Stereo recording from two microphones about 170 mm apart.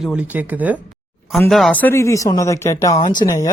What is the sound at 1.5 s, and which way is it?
Speech, 5° left (ahead or behind).